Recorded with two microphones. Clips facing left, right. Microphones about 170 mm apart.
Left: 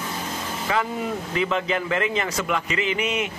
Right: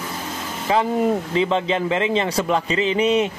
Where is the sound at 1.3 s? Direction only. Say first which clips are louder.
Right 4 dB; 25° right (ahead or behind).